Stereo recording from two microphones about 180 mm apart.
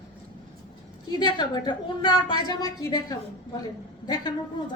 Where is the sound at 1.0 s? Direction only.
25° left (ahead or behind).